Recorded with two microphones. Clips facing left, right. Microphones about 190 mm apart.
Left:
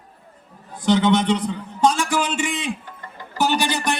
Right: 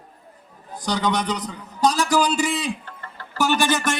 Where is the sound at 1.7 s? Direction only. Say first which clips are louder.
Right 1 dB; 35° right (ahead or behind).